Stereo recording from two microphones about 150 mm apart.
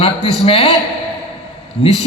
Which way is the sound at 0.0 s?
40° left (ahead or behind).